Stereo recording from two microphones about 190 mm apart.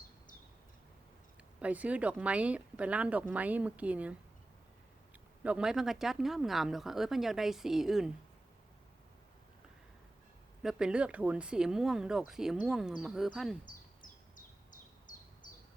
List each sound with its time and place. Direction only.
1.6 s speech: 5° right (ahead or behind)
5.4 s speech: 5° right (ahead or behind)
10.6 s speech: 5° right (ahead or behind)
14.3 s bird: 45° left (ahead or behind)